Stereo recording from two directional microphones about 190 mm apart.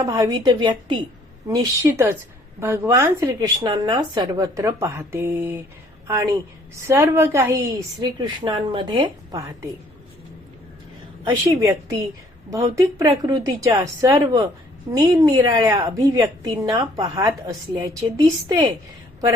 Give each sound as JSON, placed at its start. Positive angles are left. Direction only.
{"t": 0.0, "sound": "a woman's voice", "side_deg": -20}
{"t": 6.8, "sound": "speech", "side_deg": -15}
{"t": 11.3, "sound": "a woman's voice", "side_deg": -15}